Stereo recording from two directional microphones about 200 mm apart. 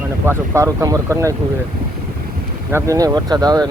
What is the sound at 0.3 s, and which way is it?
Speech, 15° right (ahead or behind).